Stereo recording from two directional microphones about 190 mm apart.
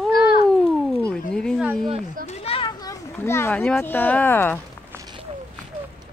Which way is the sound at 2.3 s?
30° left (ahead or behind).